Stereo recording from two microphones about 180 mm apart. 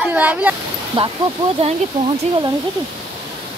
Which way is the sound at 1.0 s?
30° right (ahead or behind).